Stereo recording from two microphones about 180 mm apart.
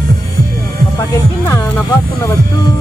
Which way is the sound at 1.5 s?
15° left (ahead or behind).